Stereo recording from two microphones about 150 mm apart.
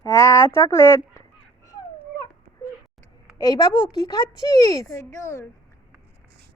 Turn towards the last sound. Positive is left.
turn(degrees=20)  # may be behind; listen again after turning